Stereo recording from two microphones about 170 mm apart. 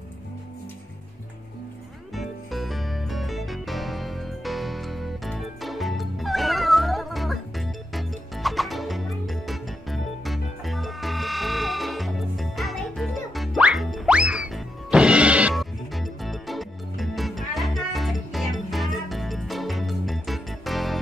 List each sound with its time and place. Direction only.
2.1 s music: centre (ahead or behind)